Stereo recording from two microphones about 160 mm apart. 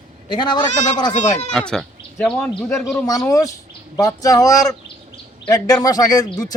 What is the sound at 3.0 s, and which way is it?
Speech, 20° left (ahead or behind).